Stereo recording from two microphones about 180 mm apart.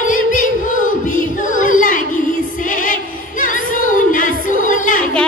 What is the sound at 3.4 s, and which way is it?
Music, 45° left (ahead or behind).